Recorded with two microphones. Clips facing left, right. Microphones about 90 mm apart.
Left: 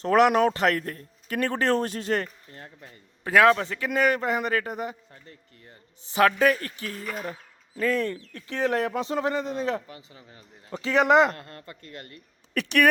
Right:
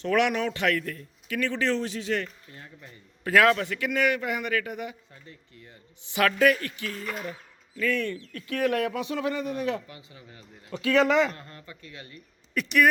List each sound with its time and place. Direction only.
0.0 s a man's voice: 40° left (ahead or behind)
3.2 s a man's voice: 25° left (ahead or behind)
11.1 s a man's voice: 60° left (ahead or behind)